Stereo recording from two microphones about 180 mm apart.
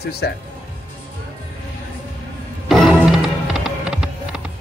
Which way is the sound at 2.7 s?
Centre (ahead or behind).